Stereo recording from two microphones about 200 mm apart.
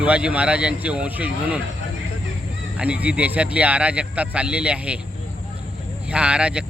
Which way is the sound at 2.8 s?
5° right (ahead or behind).